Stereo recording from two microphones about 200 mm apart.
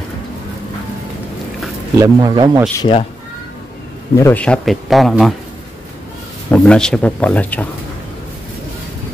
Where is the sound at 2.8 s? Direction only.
25° left (ahead or behind).